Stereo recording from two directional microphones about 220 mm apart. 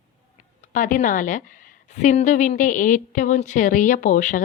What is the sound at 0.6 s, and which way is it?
A woman's voice, 35° left (ahead or behind).